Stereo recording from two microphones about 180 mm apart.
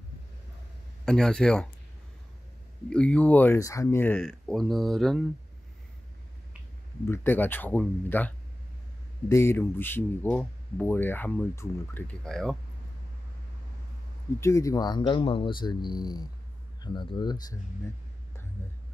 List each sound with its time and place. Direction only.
1.0 s speech: 5° left (ahead or behind)
2.9 s speech: 5° left (ahead or behind)
7.1 s speech: 10° left (ahead or behind)
14.4 s speech: 15° left (ahead or behind)